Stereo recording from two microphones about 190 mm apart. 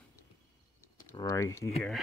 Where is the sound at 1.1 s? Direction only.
15° left (ahead or behind).